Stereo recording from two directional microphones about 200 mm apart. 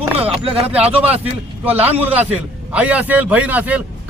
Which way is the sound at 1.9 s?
10° right (ahead or behind).